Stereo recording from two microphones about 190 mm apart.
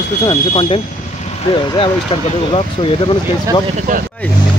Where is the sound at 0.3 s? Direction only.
30° left (ahead or behind).